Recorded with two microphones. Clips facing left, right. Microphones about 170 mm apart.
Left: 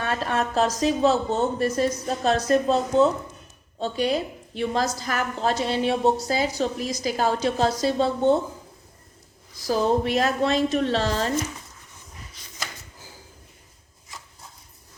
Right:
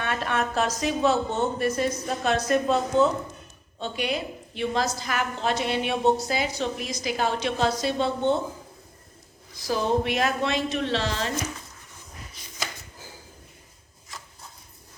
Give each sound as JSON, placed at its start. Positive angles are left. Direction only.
{"t": 0.0, "sound": "a woman's voice", "side_deg": 35}
{"t": 9.6, "sound": "a woman's voice", "side_deg": 40}